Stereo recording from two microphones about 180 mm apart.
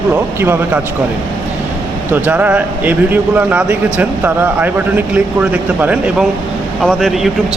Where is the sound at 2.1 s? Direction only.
10° right (ahead or behind).